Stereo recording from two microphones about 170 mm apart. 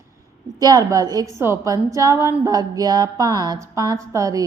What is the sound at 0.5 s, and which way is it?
A woman's voice, 20° right (ahead or behind).